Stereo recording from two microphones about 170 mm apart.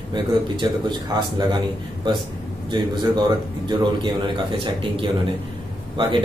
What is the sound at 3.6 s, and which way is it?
Speech, 25° right (ahead or behind).